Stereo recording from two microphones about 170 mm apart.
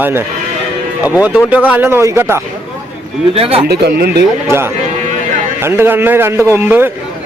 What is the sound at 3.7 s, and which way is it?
Speech, 70° right (ahead or behind).